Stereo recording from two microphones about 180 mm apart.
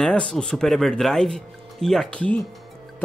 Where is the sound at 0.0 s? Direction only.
5° left (ahead or behind).